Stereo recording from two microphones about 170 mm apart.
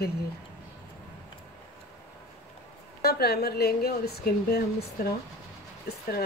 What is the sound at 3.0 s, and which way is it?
A woman's voice, 65° left (ahead or behind).